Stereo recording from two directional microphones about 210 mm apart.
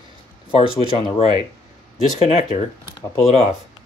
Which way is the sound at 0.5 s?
25° left (ahead or behind).